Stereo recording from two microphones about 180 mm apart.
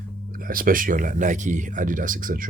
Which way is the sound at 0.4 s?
50° right (ahead or behind).